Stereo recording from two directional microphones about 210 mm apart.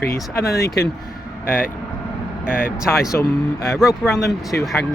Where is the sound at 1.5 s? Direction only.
45° left (ahead or behind).